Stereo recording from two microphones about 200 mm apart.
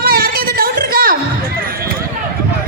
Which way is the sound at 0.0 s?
45° right (ahead or behind).